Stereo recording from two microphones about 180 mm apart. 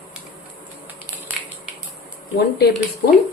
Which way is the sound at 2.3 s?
60° left (ahead or behind).